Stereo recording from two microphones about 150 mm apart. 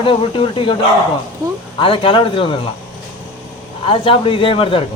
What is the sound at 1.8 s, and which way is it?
Speech, 35° left (ahead or behind).